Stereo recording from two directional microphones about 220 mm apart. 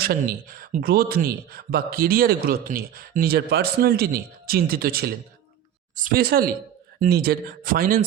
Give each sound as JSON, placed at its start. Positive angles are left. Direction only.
{"t": 0.0, "sound": "a man's voice", "side_deg": -40}